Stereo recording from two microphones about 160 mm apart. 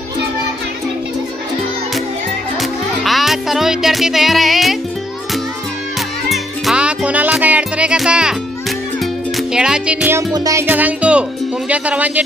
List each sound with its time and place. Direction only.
2.6 s music: centre (ahead or behind)
6.2 s music: centre (ahead or behind)
10.3 s music: 20° right (ahead or behind)
10.7 s speech: 10° right (ahead or behind)